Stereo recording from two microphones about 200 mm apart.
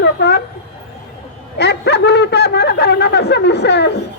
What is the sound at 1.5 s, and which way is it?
Snicker, 55° left (ahead or behind).